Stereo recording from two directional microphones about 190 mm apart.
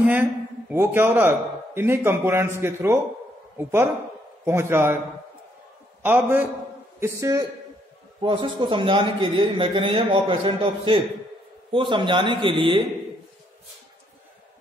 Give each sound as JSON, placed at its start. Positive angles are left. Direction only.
{"t": 0.0, "sound": "a man's voice", "side_deg": -10}
{"t": 6.0, "sound": "a man's voice", "side_deg": -10}